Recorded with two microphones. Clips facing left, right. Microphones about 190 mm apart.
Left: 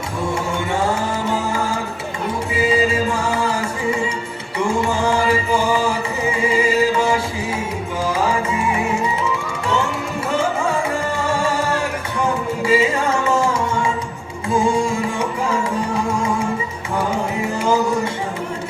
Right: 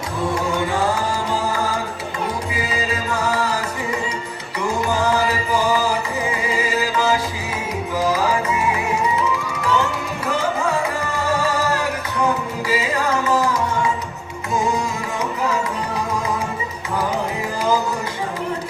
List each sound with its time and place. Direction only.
2.6 s music: 25° left (ahead or behind)
4.7 s music: 25° left (ahead or behind)
8.1 s music: 30° left (ahead or behind)
11.0 s music: 25° left (ahead or behind)